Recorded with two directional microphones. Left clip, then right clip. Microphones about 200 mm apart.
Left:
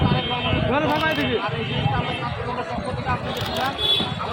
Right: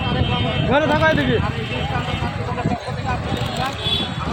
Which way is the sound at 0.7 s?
45° right (ahead or behind).